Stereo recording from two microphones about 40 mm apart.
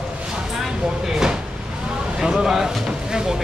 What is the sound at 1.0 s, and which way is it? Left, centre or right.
Speech, centre.